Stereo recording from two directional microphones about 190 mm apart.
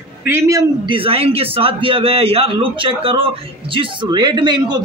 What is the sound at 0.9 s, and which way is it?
A man's voice, 30° right (ahead or behind).